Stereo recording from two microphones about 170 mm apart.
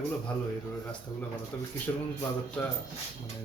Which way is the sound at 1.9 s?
20° left (ahead or behind).